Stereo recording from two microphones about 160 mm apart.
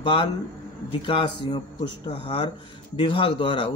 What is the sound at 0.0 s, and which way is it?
A man's voice, 30° left (ahead or behind).